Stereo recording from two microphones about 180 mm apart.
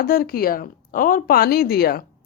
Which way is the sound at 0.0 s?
55° left (ahead or behind).